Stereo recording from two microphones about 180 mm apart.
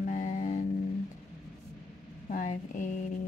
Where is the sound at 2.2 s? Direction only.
45° left (ahead or behind).